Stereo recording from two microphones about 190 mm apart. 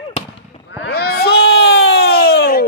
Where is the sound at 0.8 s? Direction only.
55° left (ahead or behind).